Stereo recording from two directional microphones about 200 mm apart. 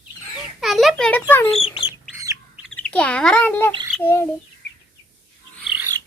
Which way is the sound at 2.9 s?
5° left (ahead or behind).